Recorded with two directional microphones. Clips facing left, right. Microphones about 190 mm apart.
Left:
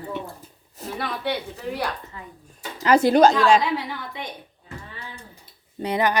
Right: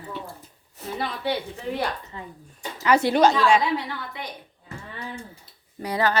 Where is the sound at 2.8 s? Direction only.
40° left (ahead or behind).